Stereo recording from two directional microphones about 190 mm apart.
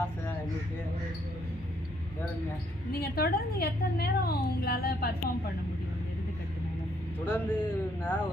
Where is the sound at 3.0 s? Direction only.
55° left (ahead or behind).